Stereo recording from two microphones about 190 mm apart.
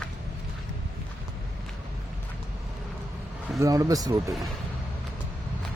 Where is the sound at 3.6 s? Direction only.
15° right (ahead or behind).